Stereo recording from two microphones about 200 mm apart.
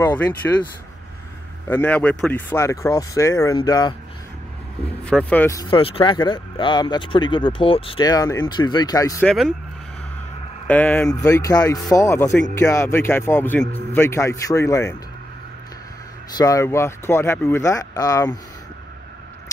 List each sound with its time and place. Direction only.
0.0 s speech: 10° left (ahead or behind)
1.7 s speech: 10° left (ahead or behind)
5.0 s speech: 5° left (ahead or behind)
9.2 s speech: centre (ahead or behind)
10.7 s speech: 10° left (ahead or behind)
16.3 s speech: 15° left (ahead or behind)